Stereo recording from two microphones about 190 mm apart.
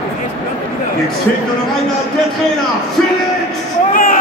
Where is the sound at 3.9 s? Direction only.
50° left (ahead or behind).